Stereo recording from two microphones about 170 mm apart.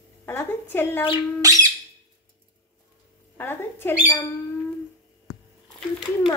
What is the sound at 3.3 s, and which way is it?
Speech, 10° left (ahead or behind).